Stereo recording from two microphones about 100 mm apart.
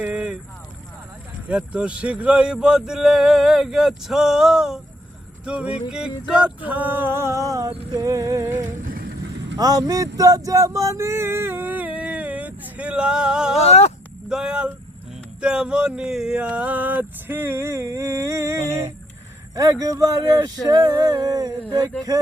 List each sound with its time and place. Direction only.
0.0 s a sound: 10° right (ahead or behind)
1.5 s speech: 10° right (ahead or behind)
5.9 s a sound: 10° right (ahead or behind); by 7.7 s 35° right (ahead or behind)
7.9 s male singing: 35° right (ahead or behind); by 13.6 s 10° right (ahead or behind)
13.6 s speech: 90° left
14.3 s speech: 10° right (ahead or behind); by 18.8 s 30° right (ahead or behind)
19.8 s male singing: 35° right (ahead or behind)